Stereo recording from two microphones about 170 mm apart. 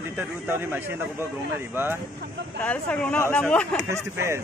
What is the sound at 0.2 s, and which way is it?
Speech, 10° right (ahead or behind).